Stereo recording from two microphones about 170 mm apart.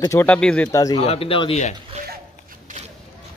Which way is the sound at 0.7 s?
20° left (ahead or behind).